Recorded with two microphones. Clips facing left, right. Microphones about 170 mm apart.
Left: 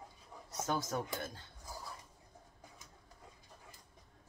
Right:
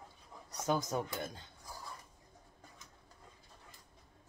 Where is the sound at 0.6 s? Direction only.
15° right (ahead or behind).